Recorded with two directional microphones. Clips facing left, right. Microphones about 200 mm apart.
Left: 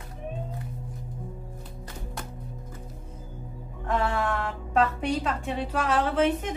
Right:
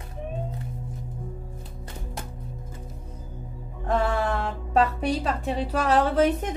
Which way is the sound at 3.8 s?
35° right (ahead or behind).